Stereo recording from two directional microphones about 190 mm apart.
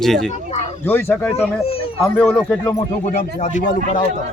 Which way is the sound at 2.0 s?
5° left (ahead or behind).